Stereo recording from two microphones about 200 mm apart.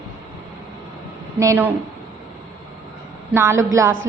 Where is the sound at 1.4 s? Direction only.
10° right (ahead or behind).